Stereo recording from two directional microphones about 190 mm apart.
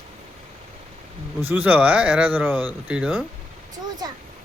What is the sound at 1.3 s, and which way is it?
A man's voice, 10° right (ahead or behind).